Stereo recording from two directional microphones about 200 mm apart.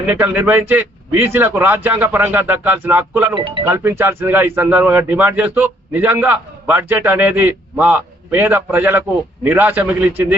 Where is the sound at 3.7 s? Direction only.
15° right (ahead or behind).